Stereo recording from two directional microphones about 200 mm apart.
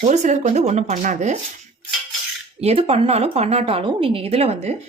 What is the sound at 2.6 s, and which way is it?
A woman's voice, 30° right (ahead or behind).